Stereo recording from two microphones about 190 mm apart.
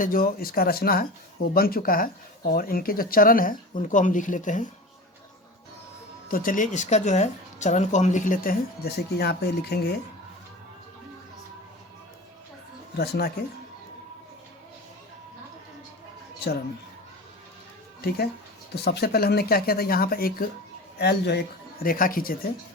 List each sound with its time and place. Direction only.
0.0 s a woman's voice: 50° left (ahead or behind)
6.2 s a woman's voice: 45° left (ahead or behind)
13.0 s speech: 55° left (ahead or behind)
18.7 s a woman's voice: 60° left (ahead or behind)
21.8 s a woman's voice: 50° left (ahead or behind)